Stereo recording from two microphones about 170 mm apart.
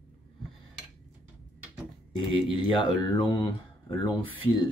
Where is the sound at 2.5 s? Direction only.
25° left (ahead or behind).